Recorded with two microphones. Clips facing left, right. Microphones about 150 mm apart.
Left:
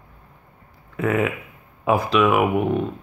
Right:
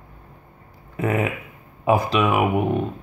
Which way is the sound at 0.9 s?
5° right (ahead or behind).